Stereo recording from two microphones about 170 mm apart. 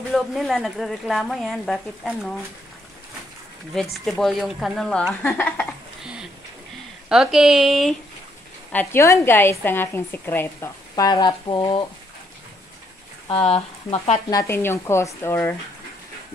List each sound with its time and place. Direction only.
0.1 s speech: centre (ahead or behind)
3.7 s speech: centre (ahead or behind)
7.1 s speech: 5° right (ahead or behind)
8.7 s a woman's voice: 15° left (ahead or behind)
13.3 s speech: 35° left (ahead or behind)
14.3 s a woman's voice: 15° left (ahead or behind)